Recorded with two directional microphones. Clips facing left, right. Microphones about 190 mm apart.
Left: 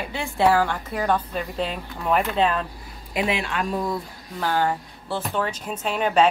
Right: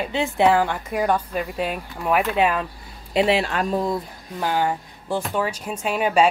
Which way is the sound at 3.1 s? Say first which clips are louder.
Right 5 dB; 30° right (ahead or behind).